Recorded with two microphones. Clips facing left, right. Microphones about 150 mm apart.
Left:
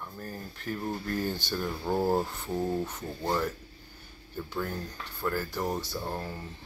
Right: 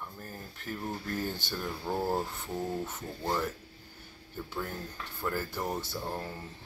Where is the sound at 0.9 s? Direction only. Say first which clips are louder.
Left 3 dB; 15° left (ahead or behind).